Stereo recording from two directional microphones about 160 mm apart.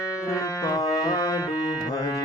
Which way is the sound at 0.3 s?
20° left (ahead or behind).